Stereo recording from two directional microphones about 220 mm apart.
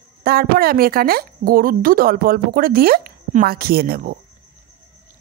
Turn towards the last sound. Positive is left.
turn(degrees=-45)  # may be behind; listen again after turning